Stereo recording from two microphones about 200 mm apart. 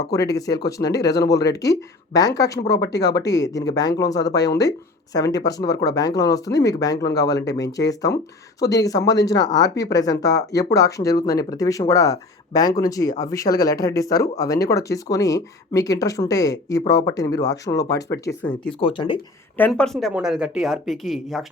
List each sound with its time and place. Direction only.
0.3 s speech: 20° left (ahead or behind)
18.4 s speech: 5° left (ahead or behind)
18.8 s speech: 25° left (ahead or behind)
19.5 s speech: 5° left (ahead or behind)